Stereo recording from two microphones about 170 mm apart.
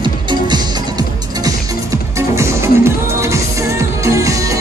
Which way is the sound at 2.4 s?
15° right (ahead or behind).